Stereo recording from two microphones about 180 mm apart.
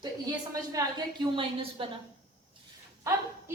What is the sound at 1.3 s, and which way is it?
Speech, 30° right (ahead or behind).